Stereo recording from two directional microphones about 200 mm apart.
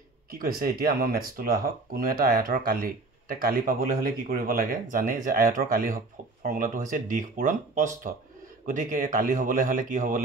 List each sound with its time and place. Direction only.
0.3 s speech: 45° right (ahead or behind)